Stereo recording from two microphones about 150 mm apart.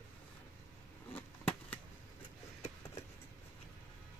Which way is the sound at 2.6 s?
15° left (ahead or behind).